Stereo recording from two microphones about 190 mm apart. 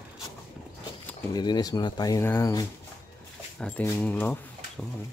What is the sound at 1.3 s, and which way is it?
Speech, 20° left (ahead or behind).